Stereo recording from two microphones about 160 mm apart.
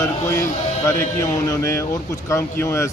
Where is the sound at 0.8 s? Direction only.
20° left (ahead or behind).